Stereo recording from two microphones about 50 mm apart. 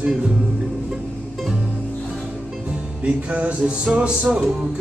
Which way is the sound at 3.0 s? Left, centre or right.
Right.